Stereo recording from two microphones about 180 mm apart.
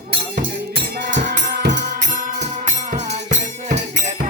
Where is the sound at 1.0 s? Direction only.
80° right.